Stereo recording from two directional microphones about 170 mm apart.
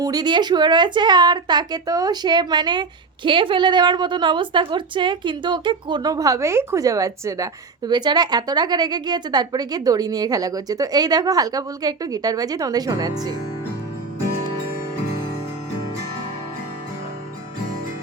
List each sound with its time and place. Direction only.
0.0 s a woman's voice: 25° right (ahead or behind)